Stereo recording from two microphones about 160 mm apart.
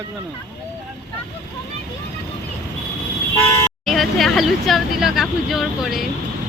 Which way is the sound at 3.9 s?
Centre (ahead or behind).